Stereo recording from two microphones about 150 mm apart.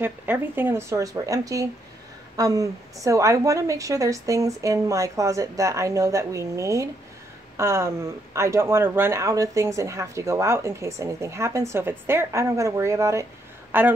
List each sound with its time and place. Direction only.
0.0 s speech: 15° right (ahead or behind)